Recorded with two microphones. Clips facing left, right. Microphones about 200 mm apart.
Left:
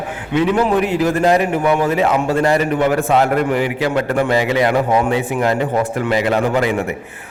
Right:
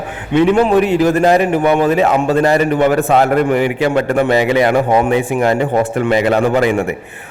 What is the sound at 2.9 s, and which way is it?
Speech, 65° right (ahead or behind).